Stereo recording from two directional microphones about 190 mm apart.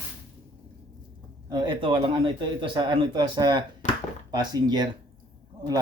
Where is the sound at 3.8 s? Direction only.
40° left (ahead or behind).